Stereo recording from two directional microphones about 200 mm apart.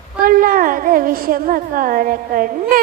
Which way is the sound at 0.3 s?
45° right (ahead or behind).